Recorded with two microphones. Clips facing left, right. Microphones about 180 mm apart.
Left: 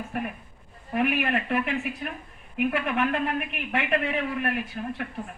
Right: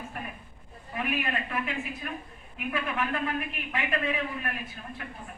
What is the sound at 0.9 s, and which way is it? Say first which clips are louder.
A man's voice: left 6 dB; 70° left (ahead or behind).